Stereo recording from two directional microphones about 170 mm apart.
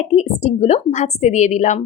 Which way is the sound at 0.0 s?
40° left (ahead or behind).